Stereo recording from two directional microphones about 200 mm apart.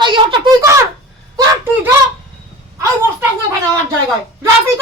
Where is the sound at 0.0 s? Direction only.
25° right (ahead or behind).